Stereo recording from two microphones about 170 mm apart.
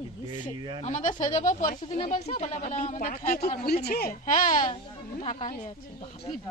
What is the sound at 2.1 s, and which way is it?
A woman's voice, 45° left (ahead or behind).